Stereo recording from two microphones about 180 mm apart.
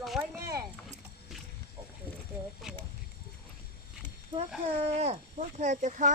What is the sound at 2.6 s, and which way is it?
Speech, centre (ahead or behind).